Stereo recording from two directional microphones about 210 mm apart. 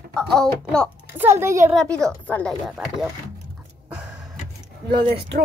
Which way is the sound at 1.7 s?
Centre (ahead or behind).